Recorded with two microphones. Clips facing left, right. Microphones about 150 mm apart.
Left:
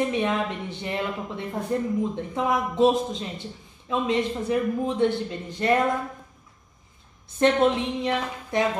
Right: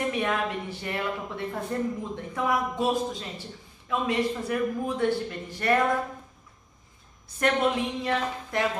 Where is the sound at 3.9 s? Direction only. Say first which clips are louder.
Left 2 dB; 20° left (ahead or behind).